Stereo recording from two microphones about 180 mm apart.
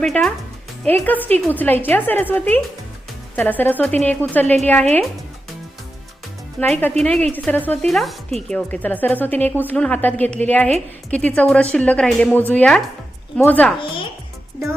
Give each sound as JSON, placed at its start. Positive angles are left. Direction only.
{"t": 0.0, "sound": "a woman's voice", "side_deg": 5}
{"t": 3.6, "sound": "a woman's voice", "side_deg": 10}
{"t": 6.6, "sound": "a woman's voice", "side_deg": 10}
{"t": 13.7, "sound": "a woman's voice", "side_deg": 30}